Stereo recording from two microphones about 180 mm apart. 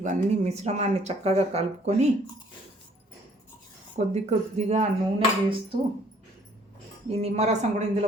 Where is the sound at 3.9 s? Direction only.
40° right (ahead or behind).